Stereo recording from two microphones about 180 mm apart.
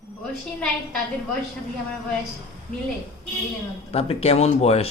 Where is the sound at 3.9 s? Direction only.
35° left (ahead or behind).